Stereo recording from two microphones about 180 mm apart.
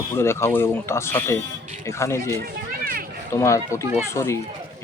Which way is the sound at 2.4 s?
55° right (ahead or behind).